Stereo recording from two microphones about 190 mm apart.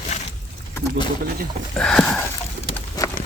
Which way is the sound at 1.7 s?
5° left (ahead or behind).